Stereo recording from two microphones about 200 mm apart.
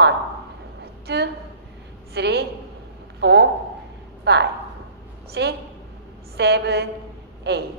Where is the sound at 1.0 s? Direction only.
55° right (ahead or behind).